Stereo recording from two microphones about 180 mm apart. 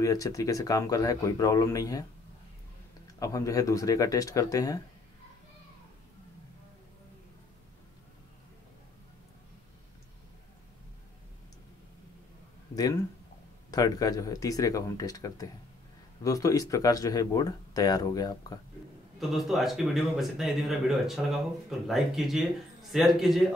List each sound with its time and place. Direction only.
0.0 s speech: 20° left (ahead or behind)
3.1 s speech: 20° left (ahead or behind)
12.7 s speech: 20° left (ahead or behind)
19.1 s speech: centre (ahead or behind)